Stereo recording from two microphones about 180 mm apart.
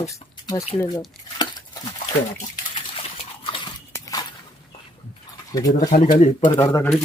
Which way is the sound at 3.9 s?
20° left (ahead or behind).